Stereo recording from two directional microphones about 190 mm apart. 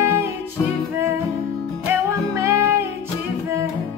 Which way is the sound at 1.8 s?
15° right (ahead or behind).